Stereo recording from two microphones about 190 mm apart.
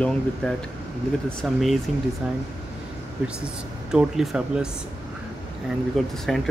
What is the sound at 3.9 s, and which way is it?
Speech, 5° right (ahead or behind).